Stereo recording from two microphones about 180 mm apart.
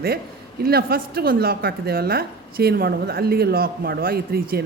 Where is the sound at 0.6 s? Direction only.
55° right (ahead or behind).